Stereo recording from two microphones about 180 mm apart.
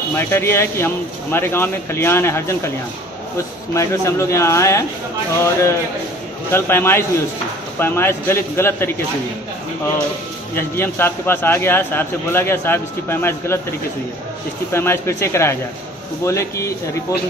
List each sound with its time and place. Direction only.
0.1 s a man's voice: 15° left (ahead or behind)
3.7 s a man's voice: 15° left (ahead or behind)
10.5 s a man's voice: 10° left (ahead or behind)
14.7 s a man's voice: 15° left (ahead or behind)